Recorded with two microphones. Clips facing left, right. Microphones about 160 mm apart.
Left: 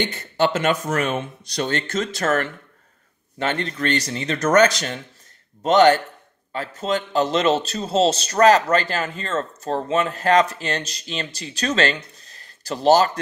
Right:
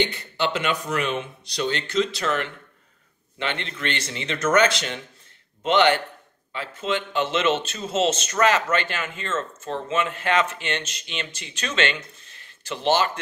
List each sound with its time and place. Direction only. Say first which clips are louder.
0.0 s a man's voice: left 3 dB; 45° left (ahead or behind)